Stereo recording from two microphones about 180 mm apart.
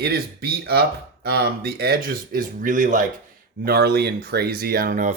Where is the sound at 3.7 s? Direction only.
65° right (ahead or behind).